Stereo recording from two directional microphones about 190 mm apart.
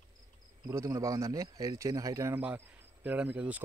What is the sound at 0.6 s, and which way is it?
A man's voice, 15° right (ahead or behind).